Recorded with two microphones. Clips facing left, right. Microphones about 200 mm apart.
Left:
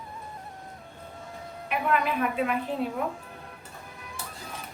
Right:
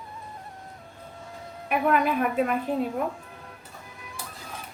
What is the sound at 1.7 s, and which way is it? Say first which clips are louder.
Speech: right 4 dB; 45° right (ahead or behind).